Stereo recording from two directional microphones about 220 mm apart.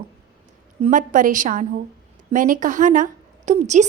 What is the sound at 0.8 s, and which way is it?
A woman's voice, 35° right (ahead or behind).